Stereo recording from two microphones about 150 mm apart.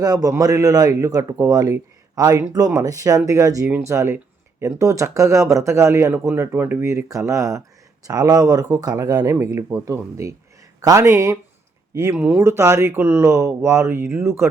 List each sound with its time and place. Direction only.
0.0 s speech: 25° right (ahead or behind)